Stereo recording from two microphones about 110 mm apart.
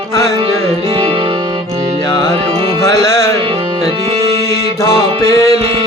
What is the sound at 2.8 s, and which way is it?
Music, 25° left (ahead or behind).